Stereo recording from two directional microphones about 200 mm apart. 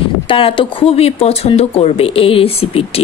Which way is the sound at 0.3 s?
25° left (ahead or behind).